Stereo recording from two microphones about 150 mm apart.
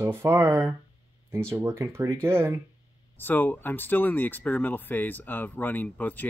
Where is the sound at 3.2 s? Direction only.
10° left (ahead or behind).